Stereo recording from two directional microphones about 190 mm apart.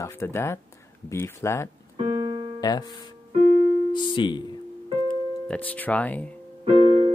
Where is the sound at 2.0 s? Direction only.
25° right (ahead or behind).